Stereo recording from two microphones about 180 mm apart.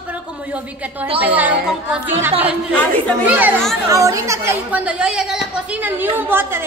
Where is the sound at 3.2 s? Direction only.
10° right (ahead or behind).